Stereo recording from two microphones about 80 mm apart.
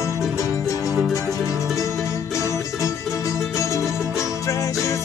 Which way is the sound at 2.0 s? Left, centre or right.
Left.